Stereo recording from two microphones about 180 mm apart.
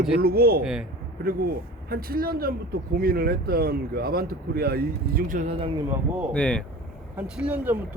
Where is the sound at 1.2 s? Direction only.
55° right (ahead or behind).